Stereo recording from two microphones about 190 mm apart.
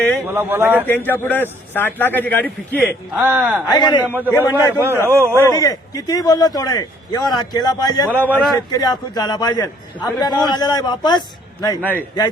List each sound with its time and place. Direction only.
0.3 s a man's voice: 10° right (ahead or behind)
0.9 s a man's voice: 10° left (ahead or behind)
3.1 s a man's voice: 10° right (ahead or behind)
3.7 s a man's voice: 20° left (ahead or behind)
4.5 s a man's voice: 15° right (ahead or behind)
5.4 s a man's voice: 20° left (ahead or behind)
8.3 s speech: 5° left (ahead or behind)
8.5 s a man's voice: 20° left (ahead or behind)
11.8 s a man's voice: 10° left (ahead or behind)